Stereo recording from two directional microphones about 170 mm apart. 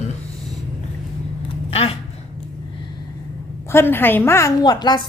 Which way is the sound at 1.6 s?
35° left (ahead or behind).